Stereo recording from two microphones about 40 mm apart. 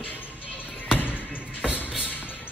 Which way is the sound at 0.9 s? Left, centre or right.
Left.